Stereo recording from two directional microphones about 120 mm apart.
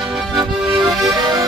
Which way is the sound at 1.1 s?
35° right (ahead or behind).